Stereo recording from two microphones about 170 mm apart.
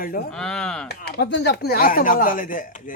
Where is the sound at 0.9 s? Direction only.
70° left (ahead or behind).